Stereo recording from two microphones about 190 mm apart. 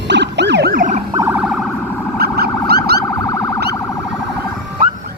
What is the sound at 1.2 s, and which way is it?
Police car, 10° right (ahead or behind).